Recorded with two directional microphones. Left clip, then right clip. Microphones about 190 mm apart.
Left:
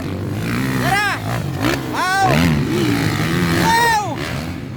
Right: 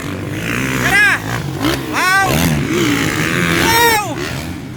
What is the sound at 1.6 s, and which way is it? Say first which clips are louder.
Vehicle: right 4 dB; 10° left (ahead or behind).